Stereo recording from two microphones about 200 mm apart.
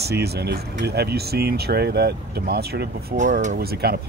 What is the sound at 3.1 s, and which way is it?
Speech, 40° right (ahead or behind).